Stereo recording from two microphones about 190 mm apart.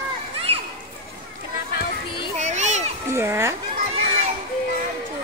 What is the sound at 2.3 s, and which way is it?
Children playing, 40° right (ahead or behind).